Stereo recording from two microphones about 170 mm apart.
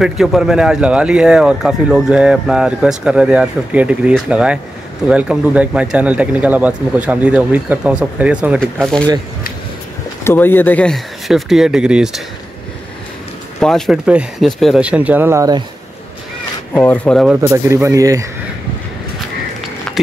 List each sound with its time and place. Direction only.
0.0 s speech: centre (ahead or behind)
8.5 s speech: 5° left (ahead or behind)
10.2 s speech: 10° left (ahead or behind); by 12.2 s 5° right (ahead or behind)
13.6 s speech: 5° left (ahead or behind); by 15.6 s 20° right (ahead or behind)
16.7 s speech: 10° left (ahead or behind)
17.4 s speech: 15° right (ahead or behind)